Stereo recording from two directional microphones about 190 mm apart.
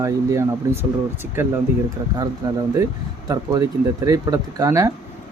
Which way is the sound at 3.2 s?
20° right (ahead or behind).